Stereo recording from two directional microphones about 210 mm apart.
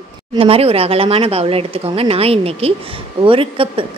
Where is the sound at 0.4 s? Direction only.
25° right (ahead or behind).